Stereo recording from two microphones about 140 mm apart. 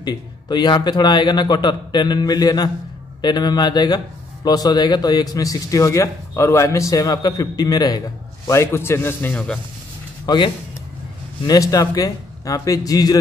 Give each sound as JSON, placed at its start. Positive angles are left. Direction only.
{"t": 0.0, "sound": "a man's voice", "side_deg": 30}
{"t": 10.2, "sound": "a man's voice", "side_deg": 35}